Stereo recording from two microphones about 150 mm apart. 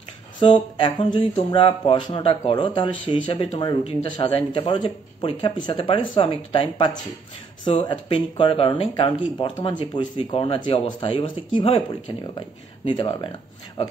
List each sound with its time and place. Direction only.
0.4 s speech: 30° left (ahead or behind)